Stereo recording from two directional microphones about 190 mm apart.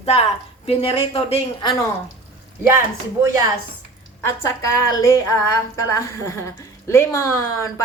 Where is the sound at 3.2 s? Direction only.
15° right (ahead or behind).